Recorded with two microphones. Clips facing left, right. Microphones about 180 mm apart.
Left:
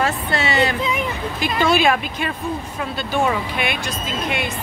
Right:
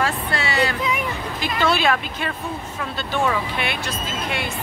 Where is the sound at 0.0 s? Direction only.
20° left (ahead or behind).